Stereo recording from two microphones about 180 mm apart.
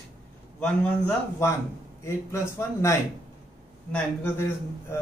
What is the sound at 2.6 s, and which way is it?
A man's voice, 15° left (ahead or behind).